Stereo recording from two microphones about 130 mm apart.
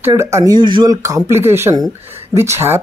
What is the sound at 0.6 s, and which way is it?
Speech, 35° right (ahead or behind).